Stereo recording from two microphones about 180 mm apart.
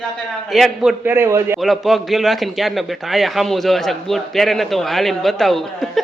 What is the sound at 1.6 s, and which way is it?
A man's voice, centre (ahead or behind).